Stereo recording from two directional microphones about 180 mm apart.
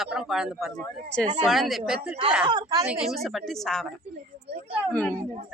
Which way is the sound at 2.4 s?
20° right (ahead or behind).